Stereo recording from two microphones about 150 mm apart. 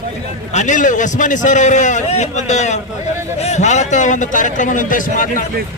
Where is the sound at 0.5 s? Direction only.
55° left (ahead or behind).